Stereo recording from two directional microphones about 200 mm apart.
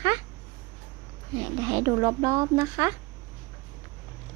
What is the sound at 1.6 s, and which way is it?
Speech, 20° right (ahead or behind).